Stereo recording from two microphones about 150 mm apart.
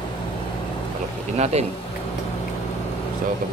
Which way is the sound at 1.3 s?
45° right (ahead or behind).